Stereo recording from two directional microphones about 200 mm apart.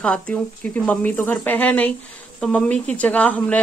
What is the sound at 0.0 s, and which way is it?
Speech, 5° left (ahead or behind).